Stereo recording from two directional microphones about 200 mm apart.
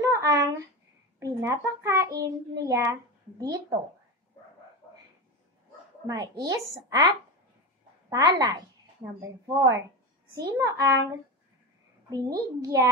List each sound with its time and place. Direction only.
0.0 s a sound: 15° right (ahead or behind)
1.2 s a child's voice: 15° right (ahead or behind)
6.0 s a child's voice: 20° right (ahead or behind)
9.7 s a sound: 65° right (ahead or behind)
10.6 s a child's voice: 15° right (ahead or behind)
12.1 s a child's voice: 15° right (ahead or behind)